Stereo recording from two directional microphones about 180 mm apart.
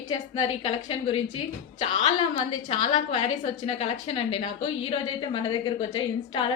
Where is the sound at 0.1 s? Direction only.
25° left (ahead or behind).